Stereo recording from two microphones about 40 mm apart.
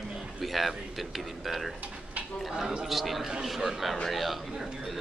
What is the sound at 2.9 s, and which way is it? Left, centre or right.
A man's voice, centre.